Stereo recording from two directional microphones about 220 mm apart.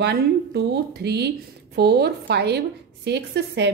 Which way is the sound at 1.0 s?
50° right (ahead or behind).